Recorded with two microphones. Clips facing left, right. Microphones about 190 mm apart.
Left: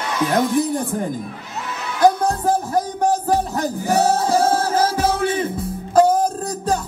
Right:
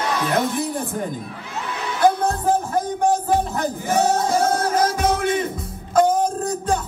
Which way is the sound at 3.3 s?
35° left (ahead or behind).